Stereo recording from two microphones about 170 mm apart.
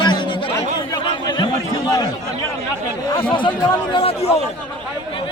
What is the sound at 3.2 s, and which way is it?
A man's voice, 30° left (ahead or behind).